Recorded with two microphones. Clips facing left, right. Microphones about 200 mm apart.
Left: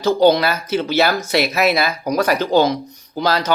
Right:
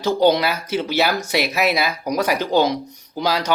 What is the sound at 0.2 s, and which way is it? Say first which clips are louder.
Speech: left 2 dB; 15° right (ahead or behind).